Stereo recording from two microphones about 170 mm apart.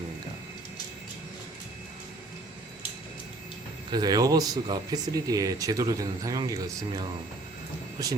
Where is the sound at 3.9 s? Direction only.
25° right (ahead or behind).